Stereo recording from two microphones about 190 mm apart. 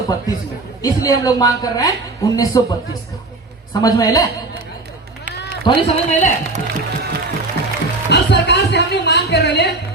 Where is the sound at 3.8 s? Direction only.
20° left (ahead or behind).